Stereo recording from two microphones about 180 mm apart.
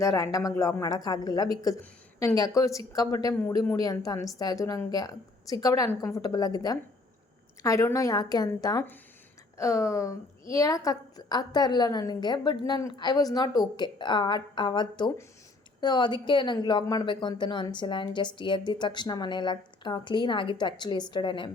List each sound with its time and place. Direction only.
0.0 s speech: 15° left (ahead or behind)